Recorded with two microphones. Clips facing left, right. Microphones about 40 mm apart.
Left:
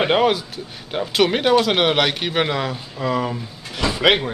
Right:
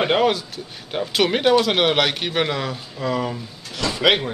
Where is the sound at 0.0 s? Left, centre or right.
Centre.